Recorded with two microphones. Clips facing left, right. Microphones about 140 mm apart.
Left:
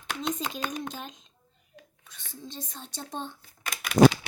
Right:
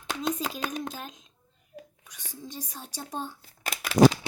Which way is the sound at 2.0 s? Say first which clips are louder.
Left 2 dB; 15° right (ahead or behind).